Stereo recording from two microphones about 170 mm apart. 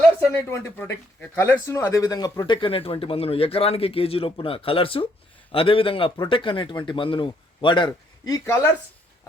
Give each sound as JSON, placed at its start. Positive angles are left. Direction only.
{"t": 0.3, "sound": "speech", "side_deg": 15}